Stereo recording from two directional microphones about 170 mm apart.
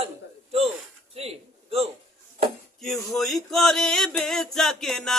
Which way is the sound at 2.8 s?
Centre (ahead or behind).